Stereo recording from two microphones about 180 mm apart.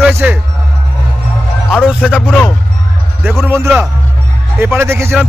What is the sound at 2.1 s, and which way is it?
Speech, 5° left (ahead or behind).